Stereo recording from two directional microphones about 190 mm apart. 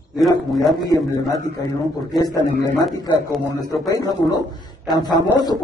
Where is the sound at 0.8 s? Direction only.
20° left (ahead or behind).